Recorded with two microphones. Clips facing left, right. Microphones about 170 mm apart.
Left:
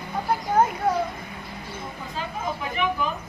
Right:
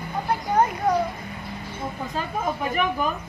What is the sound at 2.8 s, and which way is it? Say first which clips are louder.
Speech: even; 50° right (ahead or behind).